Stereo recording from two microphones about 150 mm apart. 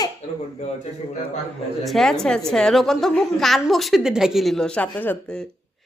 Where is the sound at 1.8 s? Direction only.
Centre (ahead or behind).